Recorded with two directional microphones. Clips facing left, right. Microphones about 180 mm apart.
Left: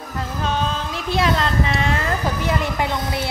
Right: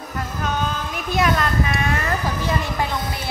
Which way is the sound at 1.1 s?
25° left (ahead or behind).